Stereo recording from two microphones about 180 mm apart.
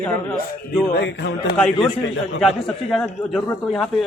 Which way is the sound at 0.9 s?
70° left (ahead or behind).